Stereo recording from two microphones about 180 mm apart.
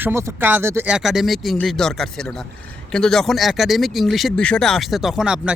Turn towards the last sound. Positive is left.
turn(degrees=-5)  # may be behind; listen again after turning